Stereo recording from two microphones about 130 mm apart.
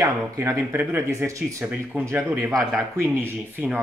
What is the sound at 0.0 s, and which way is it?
Speech, 20° right (ahead or behind).